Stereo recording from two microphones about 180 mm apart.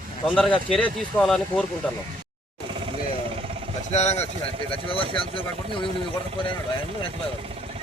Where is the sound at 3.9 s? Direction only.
35° left (ahead or behind).